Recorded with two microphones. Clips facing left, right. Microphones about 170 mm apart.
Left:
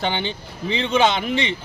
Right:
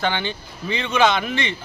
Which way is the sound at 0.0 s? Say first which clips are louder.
Even; 25° left (ahead or behind).